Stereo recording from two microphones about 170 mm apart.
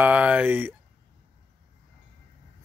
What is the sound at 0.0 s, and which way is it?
Speech, 10° right (ahead or behind).